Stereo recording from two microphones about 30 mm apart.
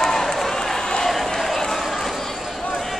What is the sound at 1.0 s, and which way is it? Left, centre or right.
Crowd, centre.